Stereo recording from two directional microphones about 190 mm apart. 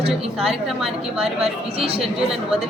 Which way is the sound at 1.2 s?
30° right (ahead or behind).